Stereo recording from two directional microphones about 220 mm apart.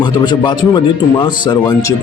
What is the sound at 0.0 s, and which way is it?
A man's voice, 20° left (ahead or behind).